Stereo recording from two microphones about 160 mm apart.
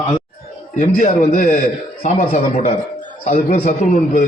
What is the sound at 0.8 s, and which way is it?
A man's voice, 55° left (ahead or behind).